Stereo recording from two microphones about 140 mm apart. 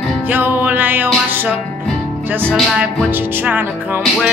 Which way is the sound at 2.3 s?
15° right (ahead or behind).